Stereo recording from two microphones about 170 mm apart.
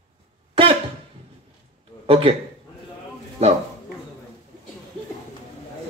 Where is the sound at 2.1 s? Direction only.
35° right (ahead or behind).